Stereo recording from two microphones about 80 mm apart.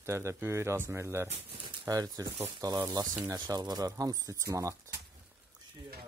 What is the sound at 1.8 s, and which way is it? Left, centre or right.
Speech, right.